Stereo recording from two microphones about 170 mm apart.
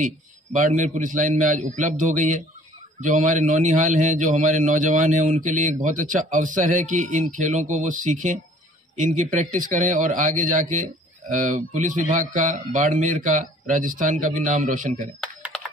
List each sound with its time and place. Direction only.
0.6 s a man's voice: 45° right (ahead or behind)